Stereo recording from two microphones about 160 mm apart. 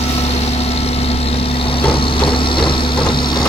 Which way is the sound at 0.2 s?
40° left (ahead or behind).